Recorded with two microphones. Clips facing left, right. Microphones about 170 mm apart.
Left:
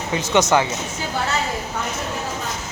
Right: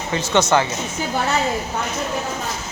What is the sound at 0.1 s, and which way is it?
Speech, 15° left (ahead or behind).